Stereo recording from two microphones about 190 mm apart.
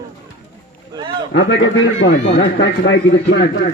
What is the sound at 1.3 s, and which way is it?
Speech, 65° left (ahead or behind).